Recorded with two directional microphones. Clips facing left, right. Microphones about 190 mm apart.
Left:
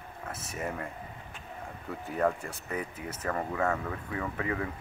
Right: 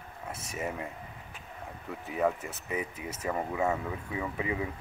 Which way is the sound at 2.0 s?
5° right (ahead or behind).